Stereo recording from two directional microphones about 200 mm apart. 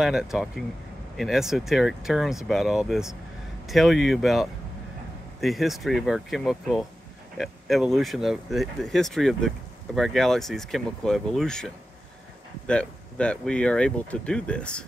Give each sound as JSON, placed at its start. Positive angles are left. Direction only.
{"t": 0.0, "sound": "speech", "side_deg": 0}